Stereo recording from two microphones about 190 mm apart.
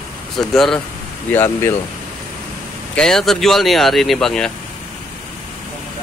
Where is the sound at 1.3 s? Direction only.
15° left (ahead or behind).